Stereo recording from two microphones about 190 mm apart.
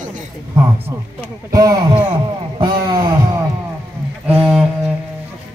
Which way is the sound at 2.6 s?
20° right (ahead or behind).